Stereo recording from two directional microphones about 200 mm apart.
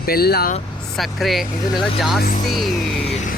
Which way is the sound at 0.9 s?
Centre (ahead or behind).